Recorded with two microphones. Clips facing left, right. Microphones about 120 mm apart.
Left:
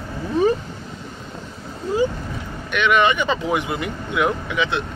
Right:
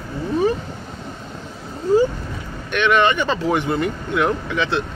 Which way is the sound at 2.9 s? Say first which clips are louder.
Right 1 dB; 10° left (ahead or behind).